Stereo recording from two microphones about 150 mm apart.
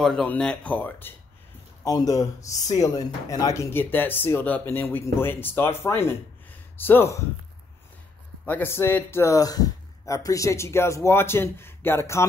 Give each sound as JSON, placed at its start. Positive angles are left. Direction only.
{"t": 0.0, "sound": "speech", "side_deg": 5}
{"t": 1.9, "sound": "speech", "side_deg": 25}
{"t": 8.5, "sound": "speech", "side_deg": 15}